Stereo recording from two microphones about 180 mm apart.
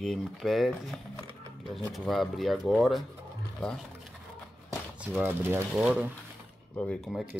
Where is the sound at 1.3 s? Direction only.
20° right (ahead or behind).